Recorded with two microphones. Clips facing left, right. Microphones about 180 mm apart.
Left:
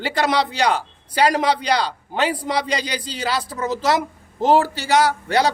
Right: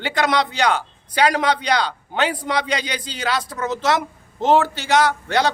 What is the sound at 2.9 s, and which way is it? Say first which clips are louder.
A man's voice: even; 35° left (ahead or behind).